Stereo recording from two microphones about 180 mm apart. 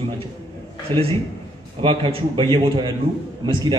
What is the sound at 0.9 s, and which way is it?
A man's voice, 25° right (ahead or behind).